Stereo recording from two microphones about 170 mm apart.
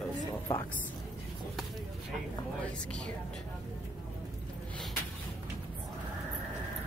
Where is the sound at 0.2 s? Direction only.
20° left (ahead or behind).